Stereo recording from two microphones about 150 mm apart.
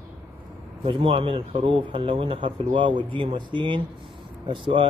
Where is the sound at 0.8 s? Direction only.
40° right (ahead or behind).